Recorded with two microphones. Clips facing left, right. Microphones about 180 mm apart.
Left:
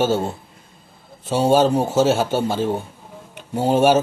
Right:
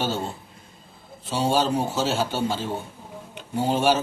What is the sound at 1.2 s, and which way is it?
Speech, 50° left (ahead or behind).